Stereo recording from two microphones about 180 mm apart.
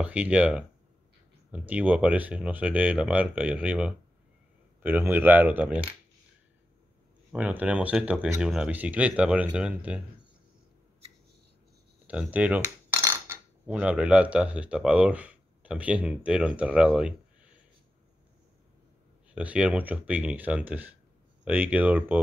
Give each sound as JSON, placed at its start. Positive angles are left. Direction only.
{"t": 0.0, "sound": "speech", "side_deg": -5}
{"t": 7.3, "sound": "speech", "side_deg": -5}
{"t": 12.1, "sound": "dishes", "side_deg": -5}
{"t": 19.3, "sound": "speech", "side_deg": -5}